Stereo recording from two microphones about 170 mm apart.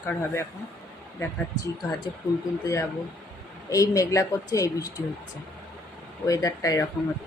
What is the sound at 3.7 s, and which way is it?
A woman's voice, 20° left (ahead or behind).